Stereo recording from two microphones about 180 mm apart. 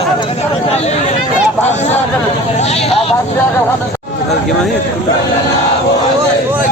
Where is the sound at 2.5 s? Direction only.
35° left (ahead or behind).